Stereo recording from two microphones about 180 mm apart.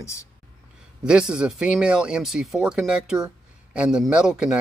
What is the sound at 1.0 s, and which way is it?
Speech, 5° right (ahead or behind).